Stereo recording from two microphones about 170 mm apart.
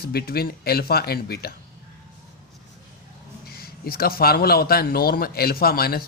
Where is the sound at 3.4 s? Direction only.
65° left (ahead or behind).